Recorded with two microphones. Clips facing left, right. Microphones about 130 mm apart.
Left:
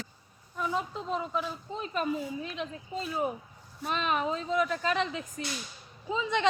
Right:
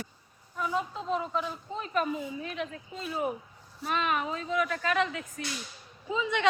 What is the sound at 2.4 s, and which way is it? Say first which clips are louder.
A woman's voice: right 1 dB; 25° left (ahead or behind).